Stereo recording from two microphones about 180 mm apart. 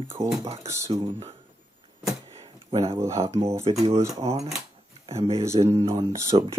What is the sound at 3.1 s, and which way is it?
Speech, 35° right (ahead or behind).